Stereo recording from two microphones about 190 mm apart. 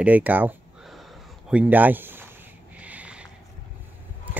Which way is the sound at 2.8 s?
5° right (ahead or behind).